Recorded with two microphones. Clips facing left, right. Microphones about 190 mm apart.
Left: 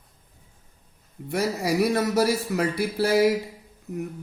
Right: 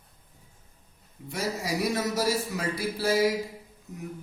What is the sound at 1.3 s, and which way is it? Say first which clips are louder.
A man's voice: left 6 dB; 60° left (ahead or behind).